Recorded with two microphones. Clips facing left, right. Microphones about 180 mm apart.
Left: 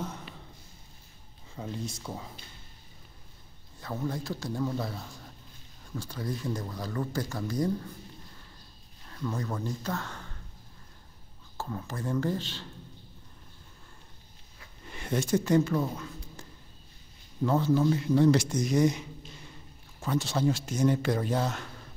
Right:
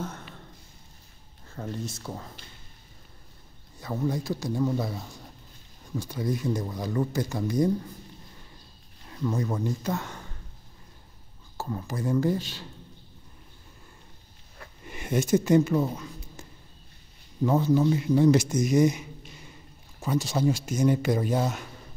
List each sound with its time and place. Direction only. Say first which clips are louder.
1.5 s speech: right 2 dB; 5° left (ahead or behind)
3.8 s speech: right 5 dB; 10° right (ahead or behind)
9.0 s speech: right 5 dB; 15° right (ahead or behind)
11.5 s speech: right 4 dB; 5° right (ahead or behind)
14.9 s speech: right 4 dB; 10° right (ahead or behind)
18.9 s a sound: right 2 dB; 10° right (ahead or behind)
20.0 s speech: right 2 dB; 15° right (ahead or behind)